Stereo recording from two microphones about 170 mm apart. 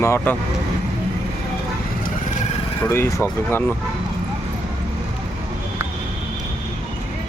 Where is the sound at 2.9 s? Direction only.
15° left (ahead or behind).